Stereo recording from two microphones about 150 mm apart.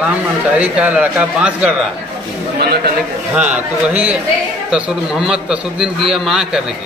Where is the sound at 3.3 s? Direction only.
10° right (ahead or behind).